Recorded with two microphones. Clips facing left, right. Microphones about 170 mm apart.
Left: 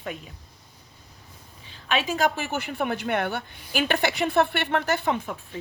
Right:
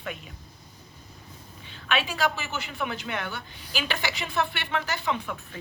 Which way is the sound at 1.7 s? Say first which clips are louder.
Left 3 dB; 40° left (ahead or behind).